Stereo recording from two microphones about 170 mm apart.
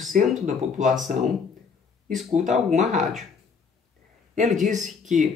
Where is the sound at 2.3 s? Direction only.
40° right (ahead or behind).